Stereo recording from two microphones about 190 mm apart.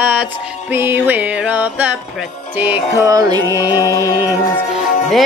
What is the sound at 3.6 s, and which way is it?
Music, 20° left (ahead or behind).